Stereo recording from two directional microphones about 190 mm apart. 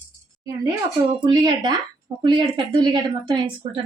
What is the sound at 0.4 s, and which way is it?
A woman's voice, 15° right (ahead or behind).